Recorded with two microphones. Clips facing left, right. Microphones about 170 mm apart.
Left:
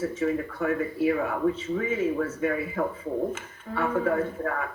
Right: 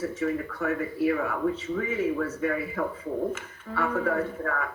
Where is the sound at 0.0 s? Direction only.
25° left (ahead or behind).